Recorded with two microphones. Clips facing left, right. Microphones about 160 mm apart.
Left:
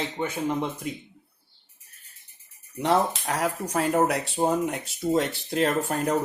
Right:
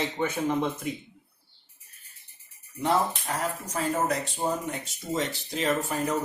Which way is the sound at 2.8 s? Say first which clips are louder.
Left 3 dB; 75° left (ahead or behind).